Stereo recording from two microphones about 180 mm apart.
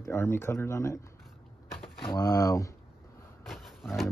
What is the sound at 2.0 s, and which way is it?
Speech, 25° left (ahead or behind).